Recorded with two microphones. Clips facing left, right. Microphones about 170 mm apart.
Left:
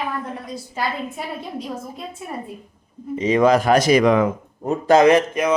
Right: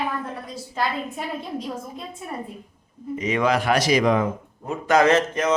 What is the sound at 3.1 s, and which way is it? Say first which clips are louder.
Speech: left 6 dB; 35° left (ahead or behind).